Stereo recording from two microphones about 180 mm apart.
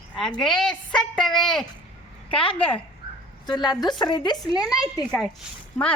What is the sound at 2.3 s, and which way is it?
A woman's voice, 30° left (ahead or behind).